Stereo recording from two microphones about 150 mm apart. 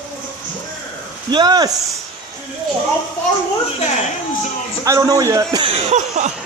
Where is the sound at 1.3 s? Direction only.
30° right (ahead or behind).